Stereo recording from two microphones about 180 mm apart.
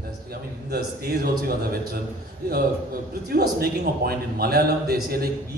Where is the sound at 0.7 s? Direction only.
60° right (ahead or behind).